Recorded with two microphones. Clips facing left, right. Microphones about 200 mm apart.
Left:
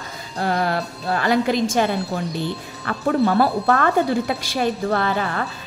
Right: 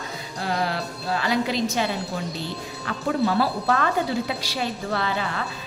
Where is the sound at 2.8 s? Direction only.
55° left (ahead or behind).